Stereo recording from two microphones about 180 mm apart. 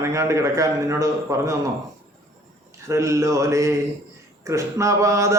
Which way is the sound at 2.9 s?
15° right (ahead or behind).